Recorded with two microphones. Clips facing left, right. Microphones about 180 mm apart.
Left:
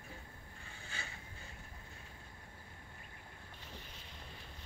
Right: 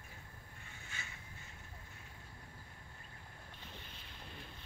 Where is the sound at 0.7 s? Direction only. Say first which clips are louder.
Left 3 dB; 35° left (ahead or behind).